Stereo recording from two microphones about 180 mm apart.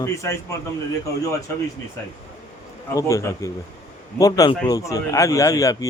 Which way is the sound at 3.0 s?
15° left (ahead or behind).